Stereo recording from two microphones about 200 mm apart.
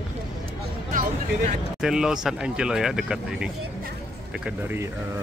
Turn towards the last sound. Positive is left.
turn(degrees=-5)  # may be behind; listen again after turning